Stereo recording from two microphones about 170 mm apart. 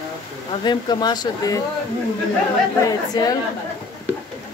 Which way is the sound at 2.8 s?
20° left (ahead or behind).